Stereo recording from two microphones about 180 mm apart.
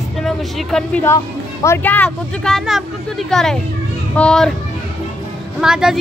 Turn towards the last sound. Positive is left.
turn(degrees=-5)  # may be behind; listen again after turning